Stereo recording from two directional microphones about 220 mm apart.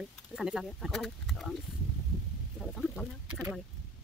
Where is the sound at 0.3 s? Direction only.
5° right (ahead or behind).